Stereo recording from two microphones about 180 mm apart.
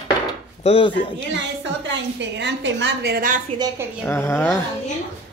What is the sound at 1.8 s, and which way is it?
A woman's voice, 80° right.